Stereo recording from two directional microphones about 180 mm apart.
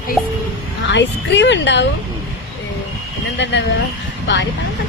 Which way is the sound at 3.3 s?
75° left (ahead or behind).